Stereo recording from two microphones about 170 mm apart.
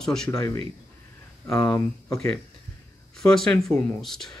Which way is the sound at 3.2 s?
5° left (ahead or behind).